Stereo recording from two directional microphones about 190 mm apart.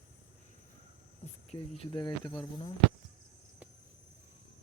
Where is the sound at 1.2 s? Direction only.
35° left (ahead or behind).